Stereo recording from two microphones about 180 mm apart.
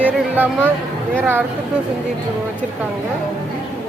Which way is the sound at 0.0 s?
10° right (ahead or behind).